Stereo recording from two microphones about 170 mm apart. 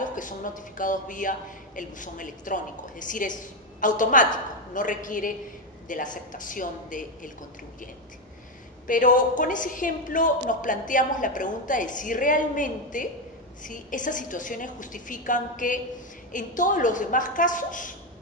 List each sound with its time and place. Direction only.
0.0 s a woman's voice: 50° left (ahead or behind)
8.8 s a woman's voice: 50° left (ahead or behind)